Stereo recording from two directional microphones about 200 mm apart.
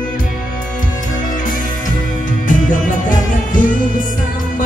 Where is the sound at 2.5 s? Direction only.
40° left (ahead or behind).